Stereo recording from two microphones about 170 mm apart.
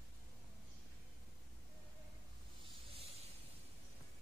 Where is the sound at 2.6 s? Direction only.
35° right (ahead or behind).